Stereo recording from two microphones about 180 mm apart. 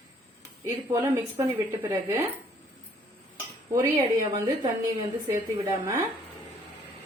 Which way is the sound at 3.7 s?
20° right (ahead or behind).